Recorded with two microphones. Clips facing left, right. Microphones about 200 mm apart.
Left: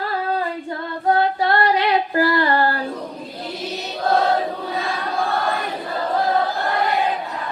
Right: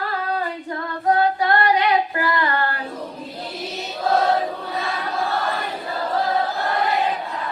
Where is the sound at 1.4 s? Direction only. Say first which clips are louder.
Even; 30° left (ahead or behind).